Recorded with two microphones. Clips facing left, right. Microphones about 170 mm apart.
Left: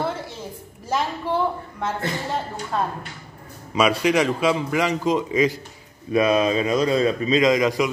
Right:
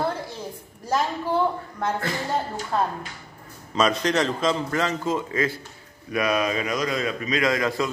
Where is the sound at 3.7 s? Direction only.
10° left (ahead or behind).